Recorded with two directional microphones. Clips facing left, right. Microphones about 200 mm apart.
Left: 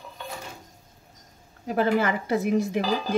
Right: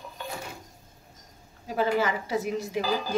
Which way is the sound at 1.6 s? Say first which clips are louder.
Left 3 dB; 55° left (ahead or behind).